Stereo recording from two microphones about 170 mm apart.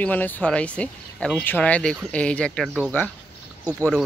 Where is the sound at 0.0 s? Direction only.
10° left (ahead or behind).